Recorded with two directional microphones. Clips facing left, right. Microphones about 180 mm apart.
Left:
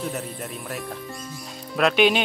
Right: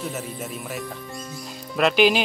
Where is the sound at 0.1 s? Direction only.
Centre (ahead or behind).